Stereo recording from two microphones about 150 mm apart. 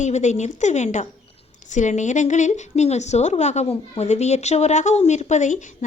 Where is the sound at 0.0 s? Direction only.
50° left (ahead or behind).